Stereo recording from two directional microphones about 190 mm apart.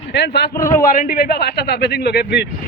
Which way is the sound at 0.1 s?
60° left (ahead or behind).